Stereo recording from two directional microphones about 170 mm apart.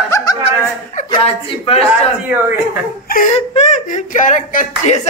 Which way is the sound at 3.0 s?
55° left (ahead or behind).